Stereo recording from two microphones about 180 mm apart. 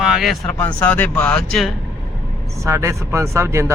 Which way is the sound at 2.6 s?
15° right (ahead or behind).